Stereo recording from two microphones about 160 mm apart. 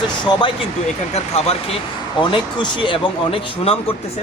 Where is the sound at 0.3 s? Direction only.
25° left (ahead or behind).